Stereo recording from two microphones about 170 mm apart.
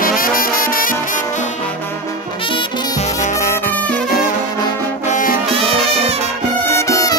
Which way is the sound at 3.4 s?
55° left (ahead or behind).